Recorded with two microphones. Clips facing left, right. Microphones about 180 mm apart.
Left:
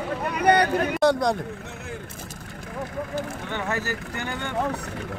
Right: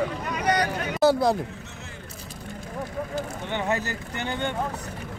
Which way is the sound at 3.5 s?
20° right (ahead or behind).